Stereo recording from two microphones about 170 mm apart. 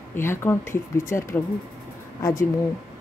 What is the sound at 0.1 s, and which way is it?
Speech, 15° left (ahead or behind).